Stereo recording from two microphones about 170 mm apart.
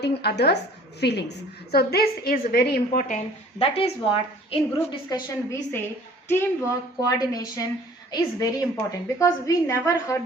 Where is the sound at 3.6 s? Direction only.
30° left (ahead or behind).